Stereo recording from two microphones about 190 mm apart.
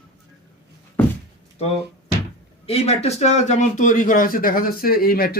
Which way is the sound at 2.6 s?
30° left (ahead or behind).